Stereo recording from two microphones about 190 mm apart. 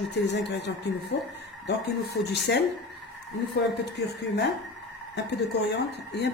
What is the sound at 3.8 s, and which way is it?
Speech, 60° left (ahead or behind).